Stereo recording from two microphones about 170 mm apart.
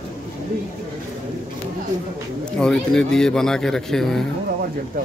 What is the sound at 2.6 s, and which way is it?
A man's voice, 5° left (ahead or behind).